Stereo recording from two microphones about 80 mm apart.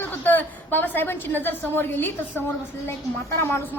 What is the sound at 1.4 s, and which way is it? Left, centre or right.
A woman's voice, left.